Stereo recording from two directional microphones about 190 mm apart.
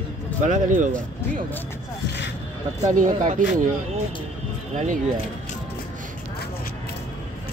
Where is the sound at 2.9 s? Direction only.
40° right (ahead or behind).